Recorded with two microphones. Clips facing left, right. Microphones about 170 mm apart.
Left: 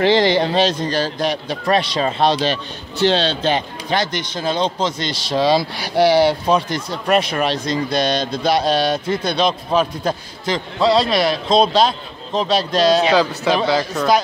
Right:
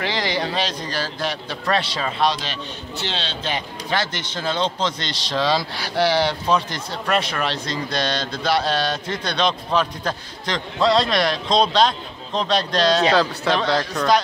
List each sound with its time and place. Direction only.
0.0 s a man's voice: 25° left (ahead or behind)
2.0 s a man's voice: 30° left (ahead or behind)
3.9 s a man's voice: 15° left (ahead or behind)